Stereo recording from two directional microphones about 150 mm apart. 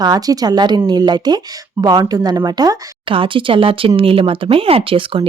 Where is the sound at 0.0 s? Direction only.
25° right (ahead or behind).